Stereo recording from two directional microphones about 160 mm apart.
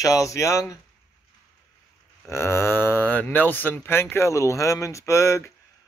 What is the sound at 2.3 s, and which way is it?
Speech, 15° left (ahead or behind).